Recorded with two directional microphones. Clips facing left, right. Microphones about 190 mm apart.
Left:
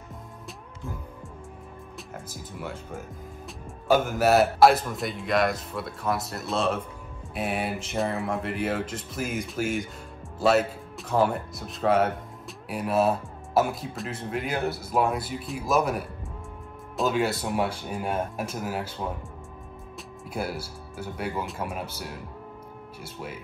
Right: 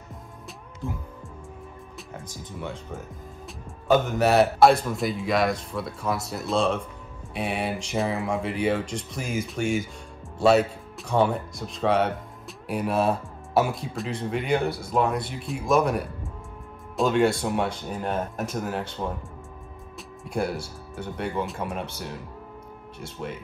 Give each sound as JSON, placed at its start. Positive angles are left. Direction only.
{"t": 2.1, "sound": "speech", "side_deg": 5}
{"t": 20.2, "sound": "speech", "side_deg": 5}